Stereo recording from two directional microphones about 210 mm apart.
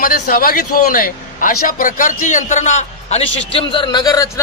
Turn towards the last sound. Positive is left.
turn(degrees=15)  # may be behind; listen again after turning